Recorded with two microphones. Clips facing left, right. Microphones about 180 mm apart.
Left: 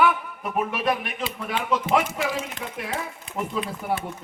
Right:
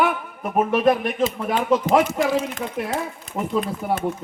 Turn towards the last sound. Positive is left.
turn(degrees=-45)  # may be behind; listen again after turning